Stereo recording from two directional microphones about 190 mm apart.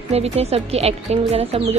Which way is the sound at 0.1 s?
35° right (ahead or behind).